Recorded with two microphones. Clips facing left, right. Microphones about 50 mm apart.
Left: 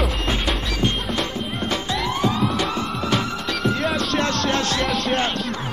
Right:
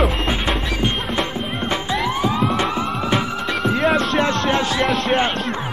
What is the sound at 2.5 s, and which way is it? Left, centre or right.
Music, right.